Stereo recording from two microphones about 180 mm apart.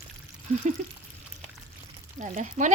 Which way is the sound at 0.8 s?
45° right (ahead or behind).